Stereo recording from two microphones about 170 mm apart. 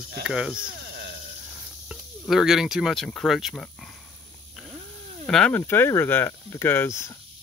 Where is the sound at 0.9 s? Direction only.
75° right (ahead or behind).